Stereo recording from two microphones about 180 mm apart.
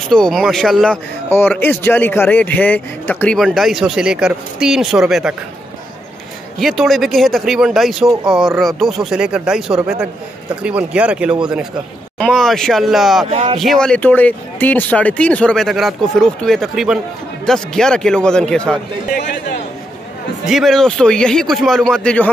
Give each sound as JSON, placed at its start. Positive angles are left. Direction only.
{"t": 0.1, "sound": "speech", "side_deg": 0}
{"t": 1.3, "sound": "speech", "side_deg": 10}
{"t": 6.6, "sound": "speech", "side_deg": 0}
{"t": 13.3, "sound": "speech", "side_deg": -30}
{"t": 13.6, "sound": "speech", "side_deg": 0}
{"t": 20.4, "sound": "speech", "side_deg": 0}